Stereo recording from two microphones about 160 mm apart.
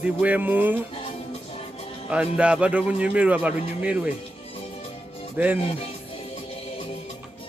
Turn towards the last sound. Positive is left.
turn(degrees=-10)  # may be behind; listen again after turning